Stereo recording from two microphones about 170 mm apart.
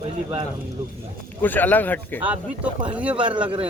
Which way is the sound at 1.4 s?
10° left (ahead or behind).